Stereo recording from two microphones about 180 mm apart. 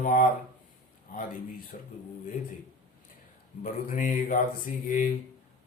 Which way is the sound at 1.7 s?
45° left (ahead or behind).